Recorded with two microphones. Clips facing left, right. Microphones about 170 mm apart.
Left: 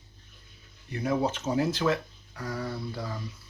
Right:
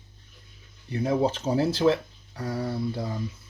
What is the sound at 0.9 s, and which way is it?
Speech, 30° right (ahead or behind).